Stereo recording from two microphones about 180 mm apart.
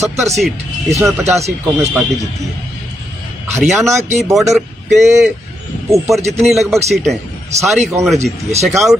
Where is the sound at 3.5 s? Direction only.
Centre (ahead or behind).